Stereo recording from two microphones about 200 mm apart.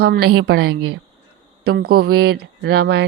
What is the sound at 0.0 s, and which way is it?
Speech, 50° right (ahead or behind).